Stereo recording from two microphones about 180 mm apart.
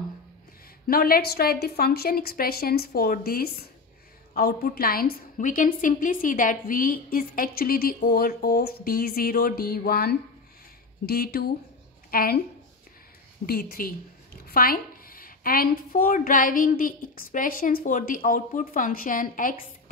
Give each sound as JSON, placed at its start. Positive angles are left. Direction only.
{"t": 0.8, "sound": "a woman's voice", "side_deg": 55}
{"t": 13.5, "sound": "a woman's voice", "side_deg": 55}